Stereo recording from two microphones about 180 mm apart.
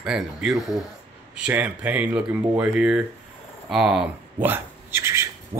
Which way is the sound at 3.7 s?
Centre (ahead or behind).